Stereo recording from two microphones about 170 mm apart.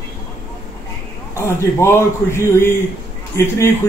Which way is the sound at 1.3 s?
15° left (ahead or behind).